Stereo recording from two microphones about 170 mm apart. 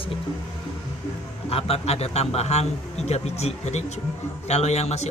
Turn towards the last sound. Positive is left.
turn(degrees=40)  # may be behind; listen again after turning